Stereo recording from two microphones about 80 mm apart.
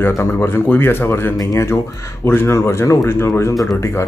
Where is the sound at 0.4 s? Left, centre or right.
Left.